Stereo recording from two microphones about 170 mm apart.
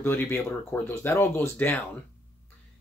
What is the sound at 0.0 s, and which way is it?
Speech, 10° left (ahead or behind).